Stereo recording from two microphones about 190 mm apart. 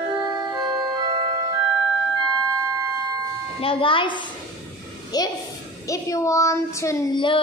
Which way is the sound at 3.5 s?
30° left (ahead or behind).